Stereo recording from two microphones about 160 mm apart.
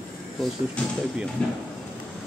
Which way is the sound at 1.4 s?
5° left (ahead or behind).